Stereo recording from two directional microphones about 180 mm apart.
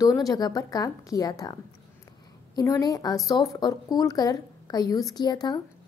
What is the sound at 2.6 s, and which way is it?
A woman's voice, 20° left (ahead or behind).